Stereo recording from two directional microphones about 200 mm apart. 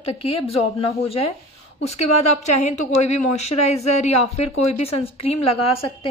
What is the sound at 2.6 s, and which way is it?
Speech, 35° left (ahead or behind).